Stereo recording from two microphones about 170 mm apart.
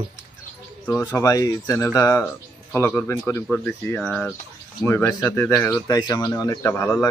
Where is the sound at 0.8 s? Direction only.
15° left (ahead or behind).